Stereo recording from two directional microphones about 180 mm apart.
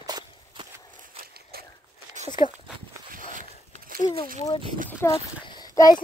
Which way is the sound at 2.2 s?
40° right (ahead or behind).